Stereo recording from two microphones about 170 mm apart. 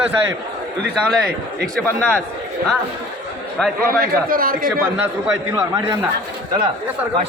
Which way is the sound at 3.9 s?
60° right (ahead or behind).